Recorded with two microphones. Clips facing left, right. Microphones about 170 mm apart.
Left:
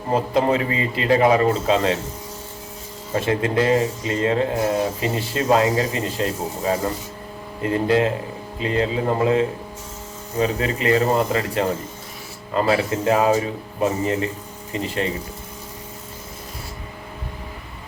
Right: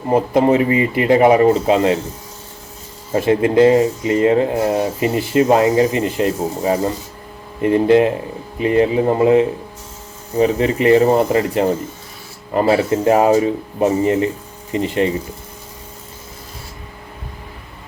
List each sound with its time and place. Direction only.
0.1 s speech: 20° right (ahead or behind)
3.1 s speech: 25° right (ahead or behind)
12.6 s speech: 30° right (ahead or behind)